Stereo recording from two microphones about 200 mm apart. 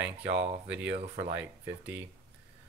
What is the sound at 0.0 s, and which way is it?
Speech, 60° right (ahead or behind).